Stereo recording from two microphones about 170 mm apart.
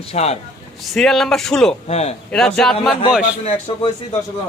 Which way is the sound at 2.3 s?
5° left (ahead or behind).